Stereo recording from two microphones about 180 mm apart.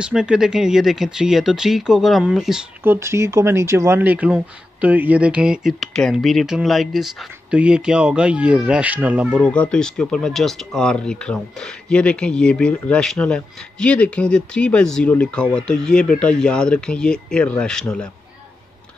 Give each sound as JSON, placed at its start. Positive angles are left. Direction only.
{"t": 0.0, "sound": "speech", "side_deg": -5}
{"t": 9.4, "sound": "speech", "side_deg": 5}